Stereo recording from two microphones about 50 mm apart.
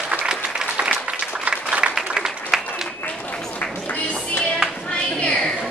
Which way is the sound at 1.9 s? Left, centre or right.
Centre.